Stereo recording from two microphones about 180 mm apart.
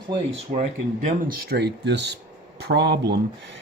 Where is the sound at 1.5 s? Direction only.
70° right (ahead or behind).